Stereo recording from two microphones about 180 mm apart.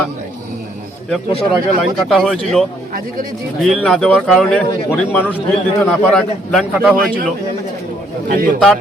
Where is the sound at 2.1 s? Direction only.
Centre (ahead or behind).